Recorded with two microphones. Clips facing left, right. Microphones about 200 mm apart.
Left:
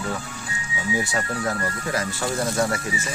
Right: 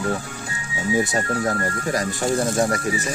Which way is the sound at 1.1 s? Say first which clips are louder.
Right 3 dB; 40° right (ahead or behind).